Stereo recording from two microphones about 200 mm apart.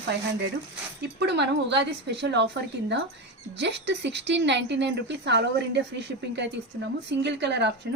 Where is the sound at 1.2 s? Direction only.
60° right (ahead or behind).